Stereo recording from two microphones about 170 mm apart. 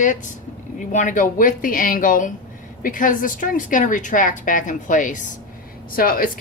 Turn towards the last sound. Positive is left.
turn(degrees=55)  # may be behind; listen again after turning